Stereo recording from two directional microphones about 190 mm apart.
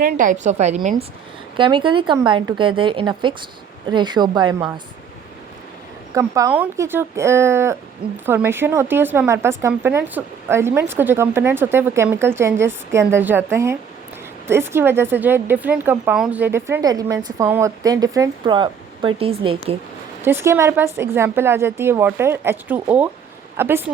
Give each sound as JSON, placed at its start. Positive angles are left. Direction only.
{"t": 0.0, "sound": "a woman's voice", "side_deg": -45}
{"t": 1.5, "sound": "speech", "side_deg": -25}
{"t": 6.1, "sound": "speech", "side_deg": -15}
{"t": 20.2, "sound": "speech", "side_deg": -15}